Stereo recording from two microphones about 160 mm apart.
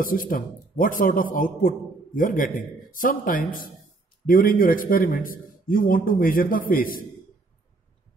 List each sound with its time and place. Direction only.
0.0 s a man's voice: 60° left (ahead or behind)